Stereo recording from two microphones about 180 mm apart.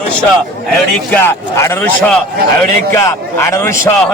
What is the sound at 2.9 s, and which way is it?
A man's voice, 15° left (ahead or behind).